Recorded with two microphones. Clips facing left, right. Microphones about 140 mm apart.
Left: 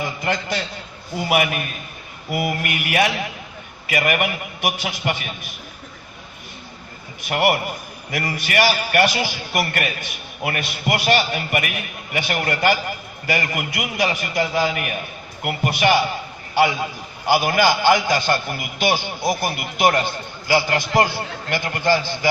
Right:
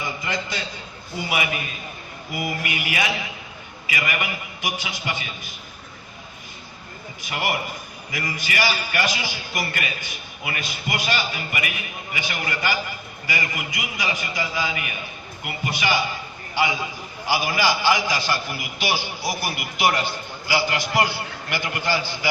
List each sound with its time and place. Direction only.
0.2 s a man's voice: 65° left (ahead or behind)
7.3 s a man's voice: 60° left (ahead or behind); by 22.3 s 45° left (ahead or behind)